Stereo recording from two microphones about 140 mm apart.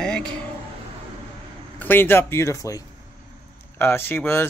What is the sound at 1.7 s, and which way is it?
Speech, 15° left (ahead or behind).